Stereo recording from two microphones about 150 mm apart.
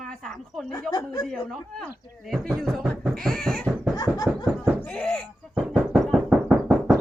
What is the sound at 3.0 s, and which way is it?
Cat, centre (ahead or behind).